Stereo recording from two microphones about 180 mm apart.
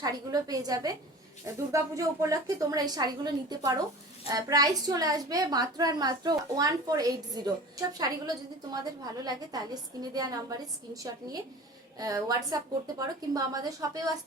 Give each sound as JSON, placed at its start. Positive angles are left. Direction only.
{"t": 0.0, "sound": "a woman's voice", "side_deg": -20}